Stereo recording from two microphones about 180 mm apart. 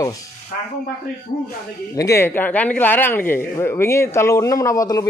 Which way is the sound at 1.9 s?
15° left (ahead or behind).